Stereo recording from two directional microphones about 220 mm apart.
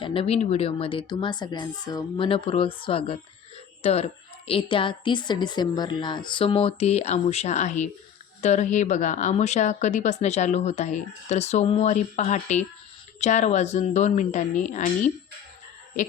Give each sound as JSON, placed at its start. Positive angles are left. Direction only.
{"t": 0.0, "sound": "a woman's voice", "side_deg": 25}